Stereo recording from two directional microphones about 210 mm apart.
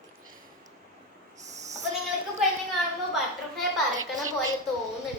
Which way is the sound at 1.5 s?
35° right (ahead or behind).